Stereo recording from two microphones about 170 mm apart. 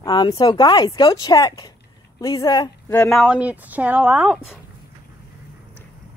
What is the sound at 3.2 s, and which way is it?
A woman's voice, 5° right (ahead or behind).